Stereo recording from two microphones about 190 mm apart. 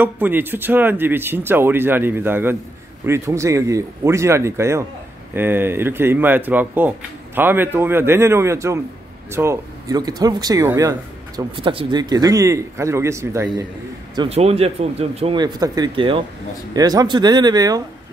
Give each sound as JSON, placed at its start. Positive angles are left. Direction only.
{"t": 0.0, "sound": "speech", "side_deg": -10}
{"t": 14.1, "sound": "speech", "side_deg": -30}